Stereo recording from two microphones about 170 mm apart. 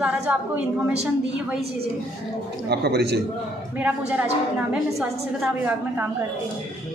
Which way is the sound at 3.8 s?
10° right (ahead or behind).